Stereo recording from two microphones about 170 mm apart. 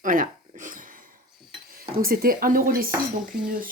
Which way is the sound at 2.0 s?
60° right (ahead or behind).